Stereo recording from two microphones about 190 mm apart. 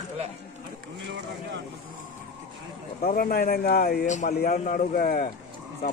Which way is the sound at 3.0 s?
50° left (ahead or behind).